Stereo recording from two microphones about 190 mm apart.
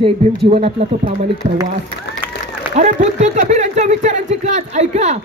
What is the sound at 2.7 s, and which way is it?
A woman's voice, 40° right (ahead or behind).